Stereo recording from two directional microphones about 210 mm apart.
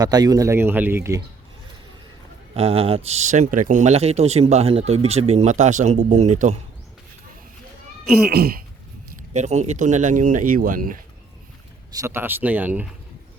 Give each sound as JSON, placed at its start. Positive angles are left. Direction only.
{"t": 0.0, "sound": "a man's voice", "side_deg": -20}
{"t": 2.6, "sound": "speech", "side_deg": -30}
{"t": 8.2, "sound": "throat clearing", "side_deg": -50}
{"t": 9.3, "sound": "speech", "side_deg": -35}
{"t": 11.9, "sound": "a man's voice", "side_deg": -15}